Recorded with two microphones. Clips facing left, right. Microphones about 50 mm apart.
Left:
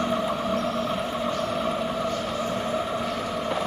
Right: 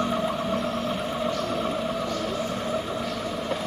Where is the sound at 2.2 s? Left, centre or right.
Centre.